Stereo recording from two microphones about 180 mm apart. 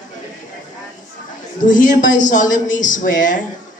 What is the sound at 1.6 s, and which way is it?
A woman's voice, 45° left (ahead or behind).